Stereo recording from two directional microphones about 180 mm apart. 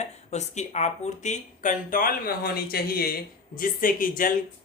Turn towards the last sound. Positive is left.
turn(degrees=50)  # may be behind; listen again after turning